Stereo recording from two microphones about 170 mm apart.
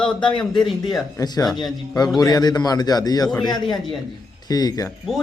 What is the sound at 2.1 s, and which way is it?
A man's voice, 25° left (ahead or behind).